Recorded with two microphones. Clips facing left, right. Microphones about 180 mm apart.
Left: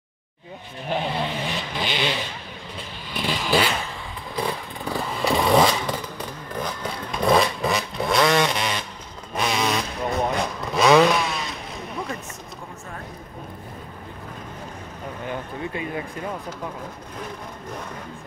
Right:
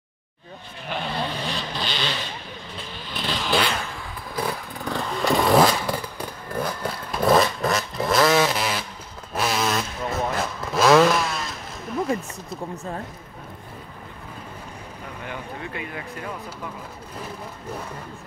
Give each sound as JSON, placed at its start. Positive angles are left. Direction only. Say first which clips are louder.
{"t": 1.1, "sound": "vehicle", "louder": "left 1 dB", "side_deg": 15}
{"t": 3.2, "sound": "a sound", "louder": "left 2 dB", "side_deg": 10}
{"t": 4.4, "sound": "motorcycle", "louder": "left 1 dB", "side_deg": 0}
{"t": 9.3, "sound": "vehicle", "louder": "even", "side_deg": -5}
{"t": 15.7, "sound": "a sound", "louder": "left 4 dB", "side_deg": 25}
{"t": 17.2, "sound": "vehicle", "louder": "left 1 dB", "side_deg": -5}